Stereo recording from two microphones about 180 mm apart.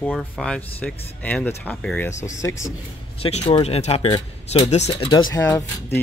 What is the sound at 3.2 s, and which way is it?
Speech, 35° left (ahead or behind).